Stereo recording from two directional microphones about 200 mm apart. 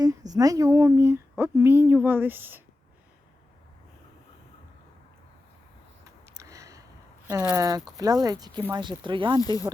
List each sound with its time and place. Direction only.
0.0 s speech: 20° right (ahead or behind)
6.1 s a sound: 15° right (ahead or behind)
7.5 s speech: 15° right (ahead or behind)
9.4 s speech: 15° left (ahead or behind)